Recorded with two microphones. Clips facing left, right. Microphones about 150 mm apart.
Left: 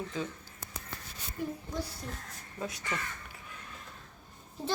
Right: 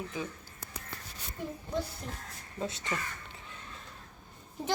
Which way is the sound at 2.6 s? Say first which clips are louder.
Right 2 dB; 25° right (ahead or behind).